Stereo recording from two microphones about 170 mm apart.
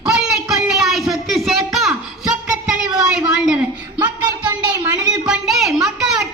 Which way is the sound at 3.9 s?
20° right (ahead or behind).